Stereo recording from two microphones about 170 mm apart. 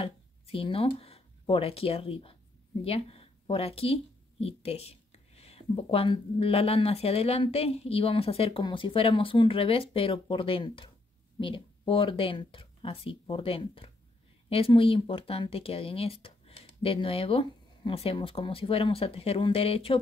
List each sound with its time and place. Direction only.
0.0 s speech: 30° left (ahead or behind)